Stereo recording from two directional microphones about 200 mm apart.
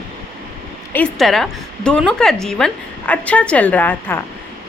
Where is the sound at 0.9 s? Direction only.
5° left (ahead or behind).